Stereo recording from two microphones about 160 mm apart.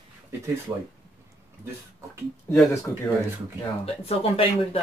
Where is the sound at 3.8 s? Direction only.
40° left (ahead or behind).